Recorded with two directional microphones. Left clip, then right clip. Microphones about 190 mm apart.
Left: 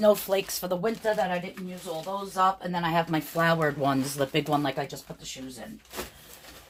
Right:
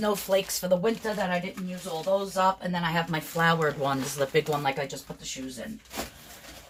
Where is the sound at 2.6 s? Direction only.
35° left (ahead or behind).